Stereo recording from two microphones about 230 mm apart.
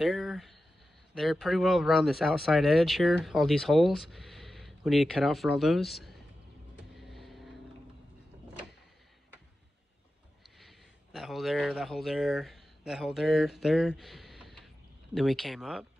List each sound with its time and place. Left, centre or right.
0.0 s speech: centre
6.8 s vehicle: centre
10.6 s speech: centre